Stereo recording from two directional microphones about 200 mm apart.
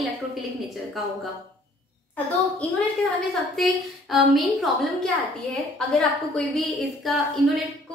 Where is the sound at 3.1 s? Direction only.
Centre (ahead or behind).